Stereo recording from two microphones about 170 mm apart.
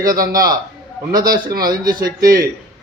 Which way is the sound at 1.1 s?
55° right (ahead or behind).